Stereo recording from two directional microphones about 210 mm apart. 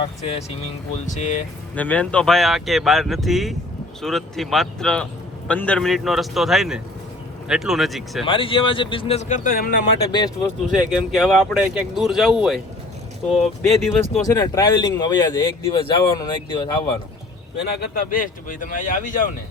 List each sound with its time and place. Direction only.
0.0 s speech: 30° left (ahead or behind)
1.7 s speech: 5° left (ahead or behind)
8.2 s speech: 25° left (ahead or behind); by 9.8 s 45° left (ahead or behind)
10.1 s speech: 20° left (ahead or behind)
10.8 s speech: centre (ahead or behind)
14.3 s speech: 15° left (ahead or behind)
17.6 s speech: 50° left (ahead or behind)